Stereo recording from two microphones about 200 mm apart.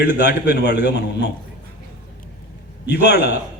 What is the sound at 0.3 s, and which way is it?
Speech, 55° left (ahead or behind).